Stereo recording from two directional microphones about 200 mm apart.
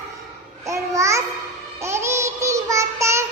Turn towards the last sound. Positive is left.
turn(degrees=-15)  # may be behind; listen again after turning